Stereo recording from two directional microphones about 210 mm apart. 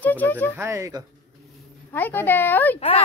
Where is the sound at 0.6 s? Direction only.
15° right (ahead or behind).